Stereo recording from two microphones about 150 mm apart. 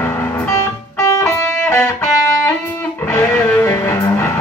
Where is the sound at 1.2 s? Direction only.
5° left (ahead or behind).